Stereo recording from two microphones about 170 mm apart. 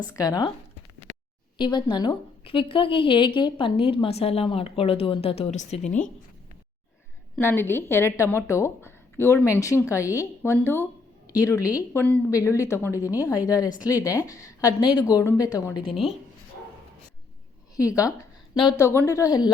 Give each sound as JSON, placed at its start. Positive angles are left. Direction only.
{"t": 0.1, "sound": "a woman's voice", "side_deg": 20}
{"t": 1.5, "sound": "a woman's voice", "side_deg": 30}
{"t": 7.3, "sound": "a woman's voice", "side_deg": 10}
{"t": 17.7, "sound": "a woman's voice", "side_deg": 20}